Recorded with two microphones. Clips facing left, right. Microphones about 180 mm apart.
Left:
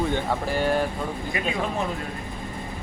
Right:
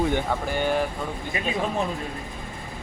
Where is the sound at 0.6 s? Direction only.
Centre (ahead or behind).